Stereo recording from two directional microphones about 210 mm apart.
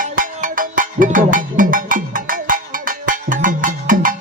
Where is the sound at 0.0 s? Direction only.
40° right (ahead or behind).